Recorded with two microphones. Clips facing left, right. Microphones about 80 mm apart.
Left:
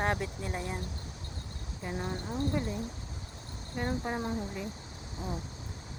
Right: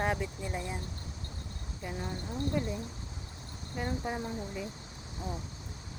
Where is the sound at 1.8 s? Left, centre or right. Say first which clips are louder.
Left 2 dB; centre.